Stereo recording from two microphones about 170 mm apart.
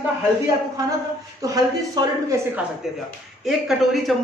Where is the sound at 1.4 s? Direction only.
20° right (ahead or behind).